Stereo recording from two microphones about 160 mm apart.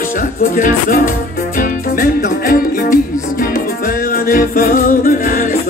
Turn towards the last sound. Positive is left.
turn(degrees=60)  # may be behind; listen again after turning